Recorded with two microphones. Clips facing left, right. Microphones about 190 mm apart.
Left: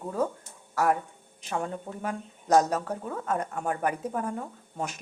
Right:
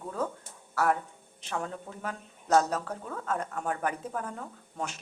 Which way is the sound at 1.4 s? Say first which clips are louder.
Left 3 dB; 10° left (ahead or behind).